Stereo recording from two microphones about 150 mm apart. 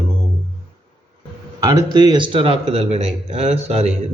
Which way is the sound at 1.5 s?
25° right (ahead or behind).